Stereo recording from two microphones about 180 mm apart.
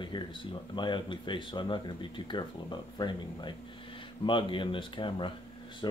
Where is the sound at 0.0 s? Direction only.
25° left (ahead or behind).